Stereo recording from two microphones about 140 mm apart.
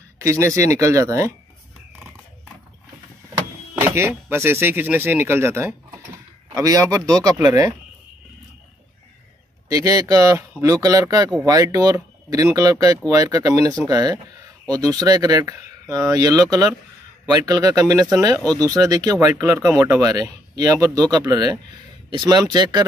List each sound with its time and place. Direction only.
0.2 s speech: 20° right (ahead or behind)
3.3 s speech: 20° right (ahead or behind)
9.7 s speech: 25° right (ahead or behind)